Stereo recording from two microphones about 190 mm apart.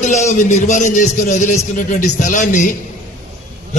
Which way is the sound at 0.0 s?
40° left (ahead or behind).